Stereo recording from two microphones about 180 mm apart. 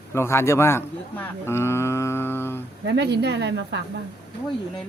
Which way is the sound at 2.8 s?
70° right (ahead or behind).